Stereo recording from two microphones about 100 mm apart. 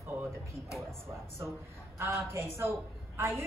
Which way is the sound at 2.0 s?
25° right (ahead or behind).